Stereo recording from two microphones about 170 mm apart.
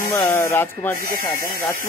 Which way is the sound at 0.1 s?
15° left (ahead or behind).